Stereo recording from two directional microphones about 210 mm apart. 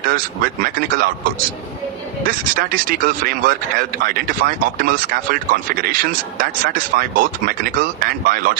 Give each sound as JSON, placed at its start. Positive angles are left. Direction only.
{"t": 0.0, "sound": "speech", "side_deg": -40}